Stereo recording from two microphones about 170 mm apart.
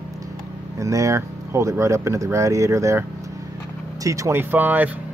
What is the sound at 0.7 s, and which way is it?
Speech, 20° right (ahead or behind).